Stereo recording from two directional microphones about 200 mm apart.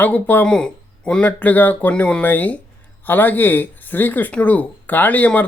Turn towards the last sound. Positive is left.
turn(degrees=5)  # may be behind; listen again after turning